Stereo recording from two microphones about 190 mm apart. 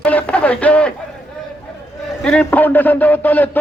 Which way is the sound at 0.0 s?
10° left (ahead or behind).